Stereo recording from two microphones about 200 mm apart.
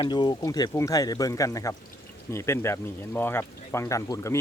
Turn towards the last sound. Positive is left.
turn(degrees=15)  # may be behind; listen again after turning